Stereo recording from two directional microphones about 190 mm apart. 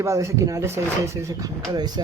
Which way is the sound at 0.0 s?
15° right (ahead or behind).